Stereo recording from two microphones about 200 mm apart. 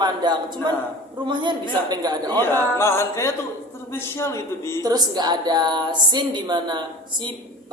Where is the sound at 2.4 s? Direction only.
10° left (ahead or behind).